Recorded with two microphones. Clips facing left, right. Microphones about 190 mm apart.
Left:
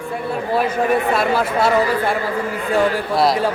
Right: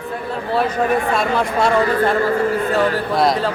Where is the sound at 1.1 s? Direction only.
5° left (ahead or behind).